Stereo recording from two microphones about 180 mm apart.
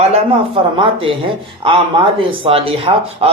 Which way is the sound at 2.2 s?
30° right (ahead or behind).